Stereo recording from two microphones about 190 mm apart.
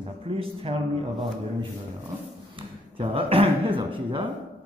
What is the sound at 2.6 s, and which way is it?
Speech, 25° right (ahead or behind).